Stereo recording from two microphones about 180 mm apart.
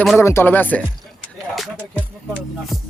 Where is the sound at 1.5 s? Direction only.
Centre (ahead or behind).